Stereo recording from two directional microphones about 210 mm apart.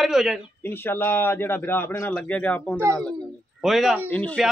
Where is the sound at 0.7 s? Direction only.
10° left (ahead or behind).